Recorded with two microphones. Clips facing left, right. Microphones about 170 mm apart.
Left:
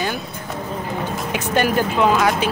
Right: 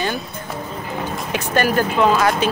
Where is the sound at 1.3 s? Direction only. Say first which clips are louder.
Even; 15° left (ahead or behind).